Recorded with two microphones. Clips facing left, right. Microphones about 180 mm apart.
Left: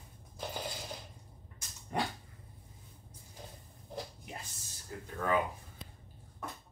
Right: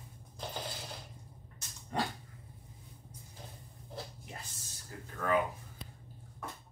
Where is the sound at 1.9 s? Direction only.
10° left (ahead or behind).